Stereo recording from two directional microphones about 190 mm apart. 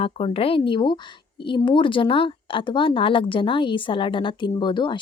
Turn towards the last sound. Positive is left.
turn(degrees=25)  # may be behind; listen again after turning